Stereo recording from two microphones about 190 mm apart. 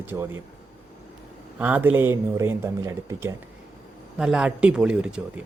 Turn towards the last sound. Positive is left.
turn(degrees=-5)  # may be behind; listen again after turning